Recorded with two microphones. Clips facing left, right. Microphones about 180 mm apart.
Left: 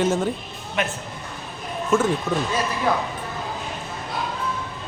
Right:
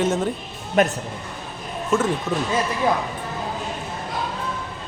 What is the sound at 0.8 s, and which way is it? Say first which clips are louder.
Speech: right 8 dB; 40° right (ahead or behind).